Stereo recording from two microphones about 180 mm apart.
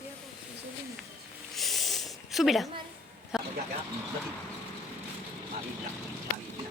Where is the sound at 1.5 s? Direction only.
Centre (ahead or behind).